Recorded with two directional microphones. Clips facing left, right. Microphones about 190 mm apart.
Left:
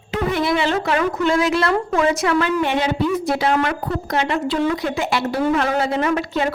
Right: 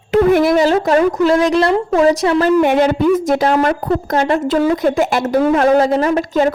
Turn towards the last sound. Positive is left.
turn(degrees=-40)  # may be behind; listen again after turning